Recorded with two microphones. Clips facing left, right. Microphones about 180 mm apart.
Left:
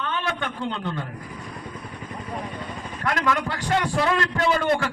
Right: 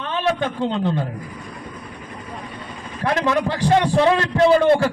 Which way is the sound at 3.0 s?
30° right (ahead or behind).